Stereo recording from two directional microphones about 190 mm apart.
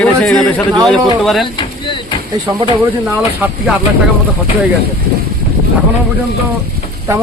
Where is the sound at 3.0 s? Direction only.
5° right (ahead or behind).